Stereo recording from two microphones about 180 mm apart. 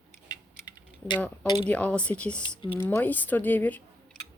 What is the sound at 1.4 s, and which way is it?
Speech, 25° left (ahead or behind).